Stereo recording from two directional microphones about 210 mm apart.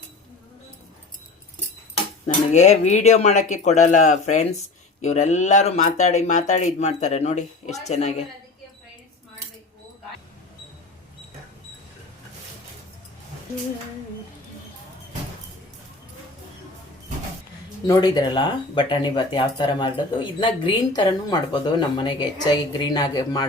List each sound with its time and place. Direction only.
2.2 s speech: 35° left (ahead or behind)
17.8 s speech: 20° left (ahead or behind)